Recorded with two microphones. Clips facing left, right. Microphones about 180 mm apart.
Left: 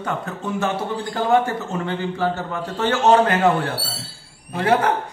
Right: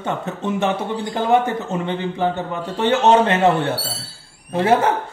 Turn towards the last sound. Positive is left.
turn(degrees=-25)  # may be behind; listen again after turning